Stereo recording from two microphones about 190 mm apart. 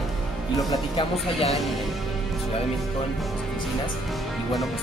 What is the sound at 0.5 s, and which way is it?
Speech, 20° left (ahead or behind).